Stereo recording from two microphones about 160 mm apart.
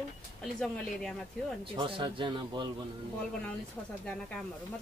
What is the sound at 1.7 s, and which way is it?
Speech, 35° right (ahead or behind).